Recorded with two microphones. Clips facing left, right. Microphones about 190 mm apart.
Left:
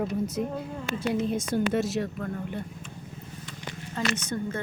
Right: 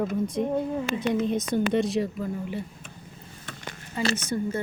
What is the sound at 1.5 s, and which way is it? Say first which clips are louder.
A woman's voice: right 2 dB; 5° left (ahead or behind).